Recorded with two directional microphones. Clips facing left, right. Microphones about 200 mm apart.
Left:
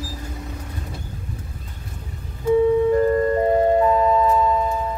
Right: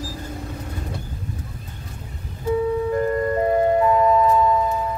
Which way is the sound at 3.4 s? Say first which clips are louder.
Right 1 dB; 30° left (ahead or behind).